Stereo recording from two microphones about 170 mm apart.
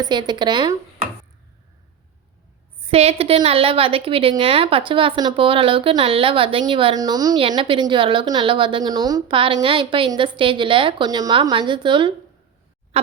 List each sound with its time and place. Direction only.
0.0 s speech: 25° right (ahead or behind)
2.9 s a woman's voice: 35° right (ahead or behind)